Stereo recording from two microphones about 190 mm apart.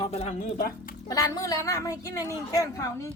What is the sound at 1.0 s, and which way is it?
A woman's voice, 20° left (ahead or behind).